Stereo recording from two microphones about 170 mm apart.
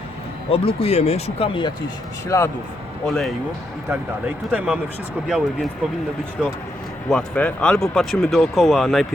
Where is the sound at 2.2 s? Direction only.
15° left (ahead or behind).